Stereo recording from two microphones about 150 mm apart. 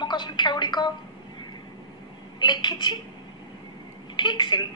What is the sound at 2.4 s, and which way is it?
Speech, 30° left (ahead or behind).